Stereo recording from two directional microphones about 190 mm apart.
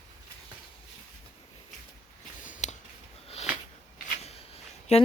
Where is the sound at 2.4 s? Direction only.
40° left (ahead or behind).